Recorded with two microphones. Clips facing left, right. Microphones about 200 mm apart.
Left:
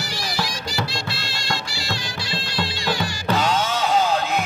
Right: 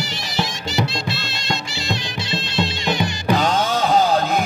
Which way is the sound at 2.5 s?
20° right (ahead or behind).